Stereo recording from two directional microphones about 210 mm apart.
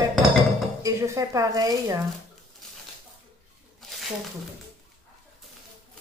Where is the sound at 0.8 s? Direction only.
15° right (ahead or behind).